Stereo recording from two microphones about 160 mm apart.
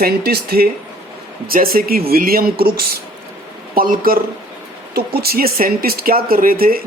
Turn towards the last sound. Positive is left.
turn(degrees=-65)  # may be behind; listen again after turning